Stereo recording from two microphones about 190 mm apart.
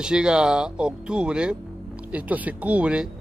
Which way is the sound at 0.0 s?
5° right (ahead or behind).